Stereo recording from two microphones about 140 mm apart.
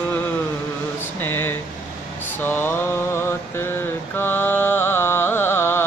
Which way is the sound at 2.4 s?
15° left (ahead or behind).